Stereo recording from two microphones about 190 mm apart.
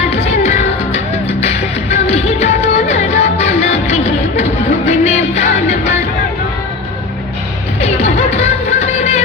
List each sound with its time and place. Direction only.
0.1 s music: 35° left (ahead or behind)
7.8 s music: 35° left (ahead or behind)